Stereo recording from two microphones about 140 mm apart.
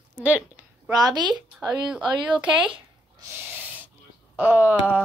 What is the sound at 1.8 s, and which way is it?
Speech, 5° right (ahead or behind).